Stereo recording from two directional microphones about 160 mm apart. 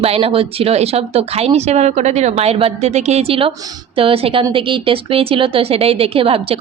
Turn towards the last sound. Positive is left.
turn(degrees=-35)  # may be behind; listen again after turning